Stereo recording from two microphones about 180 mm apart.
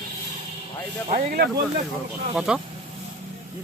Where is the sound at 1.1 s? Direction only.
45° right (ahead or behind).